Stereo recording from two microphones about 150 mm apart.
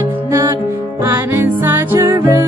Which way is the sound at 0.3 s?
20° right (ahead or behind).